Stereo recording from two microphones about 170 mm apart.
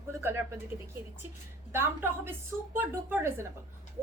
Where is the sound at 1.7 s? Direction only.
15° right (ahead or behind).